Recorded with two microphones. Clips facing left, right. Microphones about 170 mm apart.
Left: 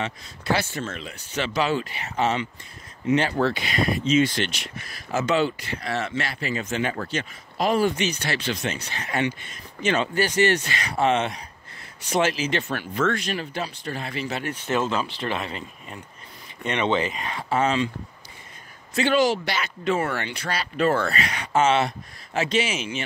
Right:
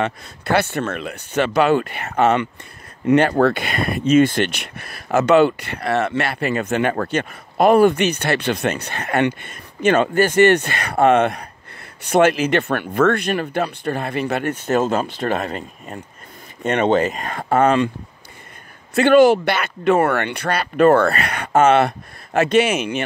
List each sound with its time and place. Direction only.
0.0 s speech: 60° right (ahead or behind)
18.9 s speech: 55° right (ahead or behind)